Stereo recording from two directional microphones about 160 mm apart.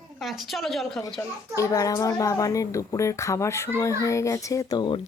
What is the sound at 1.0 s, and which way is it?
A child's voice, 25° left (ahead or behind).